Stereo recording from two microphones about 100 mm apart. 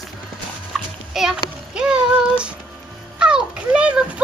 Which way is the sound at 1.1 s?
5° right (ahead or behind).